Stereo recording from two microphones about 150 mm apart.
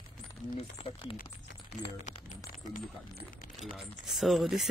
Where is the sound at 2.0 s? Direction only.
55° left (ahead or behind).